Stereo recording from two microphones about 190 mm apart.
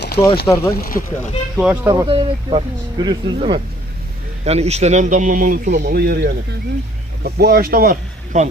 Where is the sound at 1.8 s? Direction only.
15° right (ahead or behind); by 8.5 s 45° right (ahead or behind).